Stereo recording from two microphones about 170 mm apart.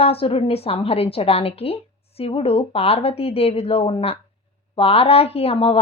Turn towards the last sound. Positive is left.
turn(degrees=35)  # may be behind; listen again after turning